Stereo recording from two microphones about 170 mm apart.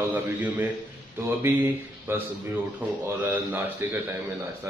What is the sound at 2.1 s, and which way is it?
Speech, 15° right (ahead or behind).